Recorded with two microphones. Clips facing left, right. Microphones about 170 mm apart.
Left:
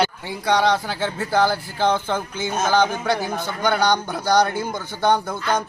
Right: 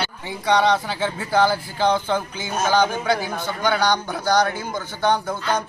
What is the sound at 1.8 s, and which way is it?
Speech, 15° right (ahead or behind).